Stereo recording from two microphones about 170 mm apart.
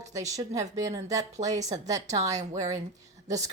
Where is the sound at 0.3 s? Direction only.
20° right (ahead or behind).